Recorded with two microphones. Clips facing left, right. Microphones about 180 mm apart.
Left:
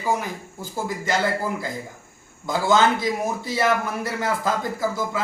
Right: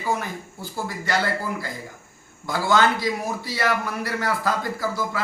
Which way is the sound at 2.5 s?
20° left (ahead or behind).